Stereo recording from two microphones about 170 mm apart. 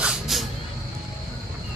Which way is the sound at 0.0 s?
5° right (ahead or behind).